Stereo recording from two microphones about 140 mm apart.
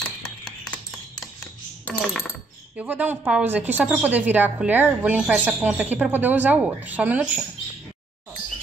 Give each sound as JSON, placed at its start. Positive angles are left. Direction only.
{"t": 1.9, "sound": "dishes", "side_deg": -5}
{"t": 2.8, "sound": "speech", "side_deg": -10}